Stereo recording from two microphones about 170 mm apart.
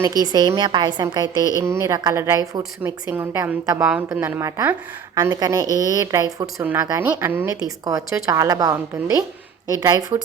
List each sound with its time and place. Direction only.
0.2 s a woman's voice: 25° right (ahead or behind)